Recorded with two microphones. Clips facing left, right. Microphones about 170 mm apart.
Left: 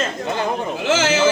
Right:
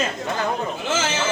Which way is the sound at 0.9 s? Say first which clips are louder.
Left 7 dB; 90° left.